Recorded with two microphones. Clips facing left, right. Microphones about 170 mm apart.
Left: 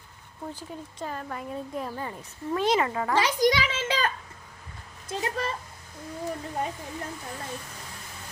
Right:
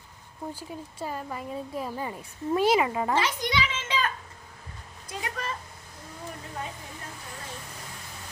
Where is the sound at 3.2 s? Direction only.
35° left (ahead or behind).